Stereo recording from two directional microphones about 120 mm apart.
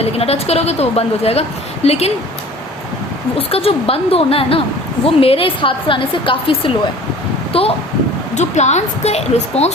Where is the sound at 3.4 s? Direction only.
55° left (ahead or behind).